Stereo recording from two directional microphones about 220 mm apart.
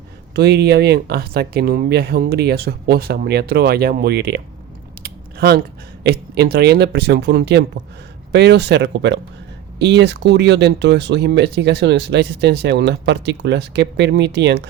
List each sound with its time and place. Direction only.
0.3 s speech: 50° right (ahead or behind)
5.0 s a sound: 45° right (ahead or behind)
6.0 s speech: 50° right (ahead or behind)